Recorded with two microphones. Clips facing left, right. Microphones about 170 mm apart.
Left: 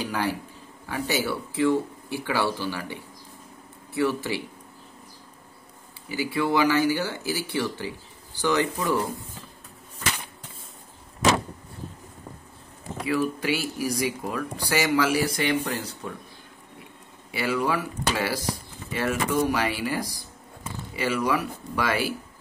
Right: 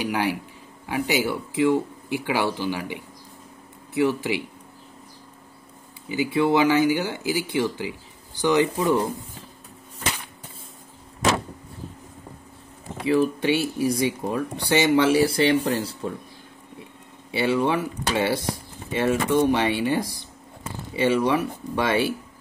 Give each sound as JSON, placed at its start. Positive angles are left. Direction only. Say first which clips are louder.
{"t": 0.0, "sound": "speech", "louder": "right 3 dB", "side_deg": -15}
{"t": 6.0, "sound": "speech", "louder": "right 4 dB", "side_deg": -20}
{"t": 13.0, "sound": "speech", "louder": "right 5 dB", "side_deg": -25}
{"t": 17.3, "sound": "speech", "louder": "right 4 dB", "side_deg": -25}